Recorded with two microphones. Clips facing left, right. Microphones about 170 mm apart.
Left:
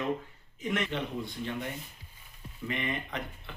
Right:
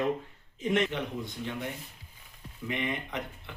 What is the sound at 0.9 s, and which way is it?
Speech, 15° right (ahead or behind).